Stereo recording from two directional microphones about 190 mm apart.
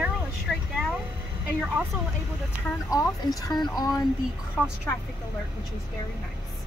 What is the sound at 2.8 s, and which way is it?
Speech, 15° left (ahead or behind).